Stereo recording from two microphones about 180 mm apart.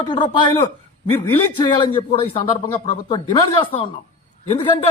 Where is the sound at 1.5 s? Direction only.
25° left (ahead or behind).